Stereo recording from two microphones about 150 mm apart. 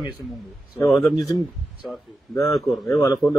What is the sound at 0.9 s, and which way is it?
Speech, centre (ahead or behind).